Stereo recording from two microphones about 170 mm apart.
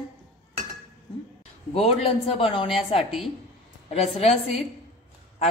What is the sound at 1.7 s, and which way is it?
A woman's voice, 35° left (ahead or behind).